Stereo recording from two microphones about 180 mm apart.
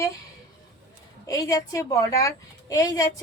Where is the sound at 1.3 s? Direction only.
20° left (ahead or behind).